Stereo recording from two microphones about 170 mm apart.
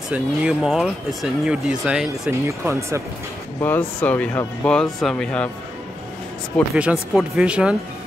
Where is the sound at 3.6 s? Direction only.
10° left (ahead or behind).